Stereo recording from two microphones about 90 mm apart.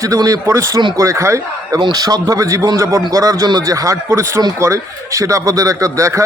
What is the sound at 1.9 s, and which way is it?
A man's voice, 45° right (ahead or behind).